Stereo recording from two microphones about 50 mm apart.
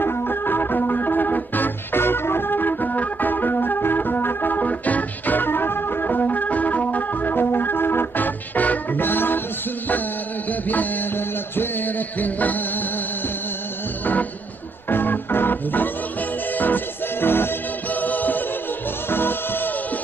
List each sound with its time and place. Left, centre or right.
0.0 s music: left
10.7 s music: left
14.9 s music: left
18.0 s music: left
19.0 s music: left